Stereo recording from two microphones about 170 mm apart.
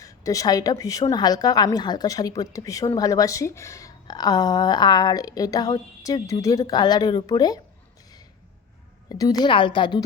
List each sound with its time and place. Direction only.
0.0 s a woman's voice: 20° left (ahead or behind)
9.0 s a woman's voice: 20° left (ahead or behind)